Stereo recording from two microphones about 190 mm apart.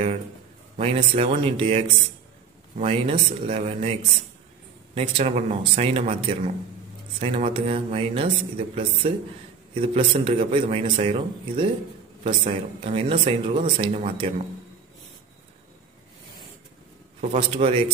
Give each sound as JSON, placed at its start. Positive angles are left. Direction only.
{"t": 0.7, "sound": "speech", "side_deg": -35}
{"t": 4.9, "sound": "speech", "side_deg": -35}
{"t": 17.2, "sound": "speech", "side_deg": -35}